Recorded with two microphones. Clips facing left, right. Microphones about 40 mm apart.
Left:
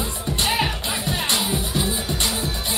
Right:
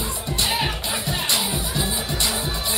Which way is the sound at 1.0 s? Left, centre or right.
Left.